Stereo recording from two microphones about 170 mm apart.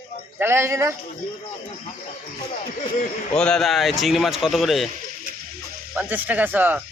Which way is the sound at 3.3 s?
5° left (ahead or behind).